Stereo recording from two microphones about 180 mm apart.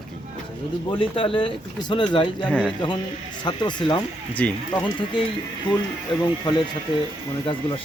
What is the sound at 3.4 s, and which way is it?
Speech, 25° left (ahead or behind).